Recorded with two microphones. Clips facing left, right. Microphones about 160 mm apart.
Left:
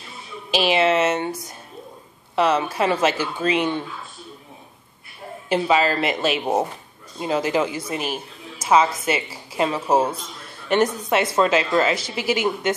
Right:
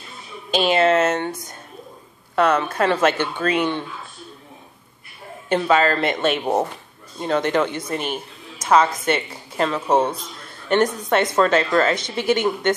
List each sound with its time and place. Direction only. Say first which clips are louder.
0.5 s a woman's voice: right 2 dB; 5° left (ahead or behind)
2.3 s a woman's voice: right 1 dB; 5° left (ahead or behind)
5.6 s a woman's voice: right 1 dB; 10° left (ahead or behind)